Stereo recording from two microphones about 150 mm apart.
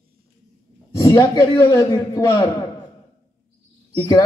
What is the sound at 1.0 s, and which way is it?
A man's voice, 25° left (ahead or behind).